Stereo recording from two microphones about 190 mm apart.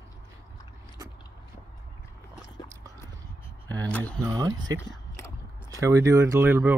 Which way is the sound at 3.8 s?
10° left (ahead or behind).